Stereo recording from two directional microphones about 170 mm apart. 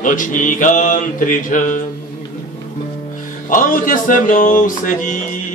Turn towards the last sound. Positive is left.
turn(degrees=50)  # may be behind; listen again after turning